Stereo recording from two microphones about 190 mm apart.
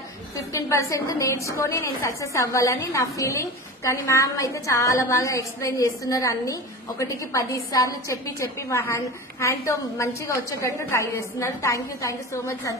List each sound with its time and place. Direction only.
0.5 s a woman's voice: 15° left (ahead or behind)